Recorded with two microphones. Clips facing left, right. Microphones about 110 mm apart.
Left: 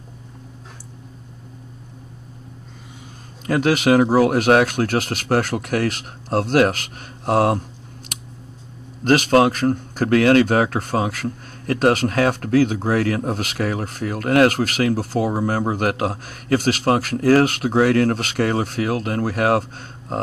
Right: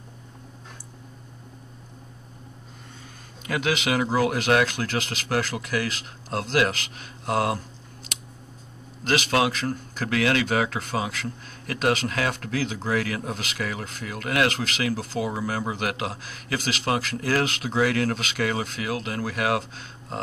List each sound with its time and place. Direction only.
3.4 s speech: 40° left (ahead or behind)
9.0 s speech: 45° left (ahead or behind)